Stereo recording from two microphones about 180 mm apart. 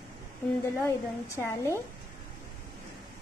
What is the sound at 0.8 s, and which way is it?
A woman's voice, 10° left (ahead or behind).